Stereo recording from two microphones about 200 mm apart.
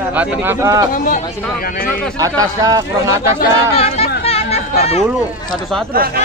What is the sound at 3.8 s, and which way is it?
Chatter, 30° left (ahead or behind).